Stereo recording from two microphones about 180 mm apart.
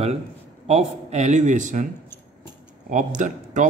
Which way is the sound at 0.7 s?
35° right (ahead or behind).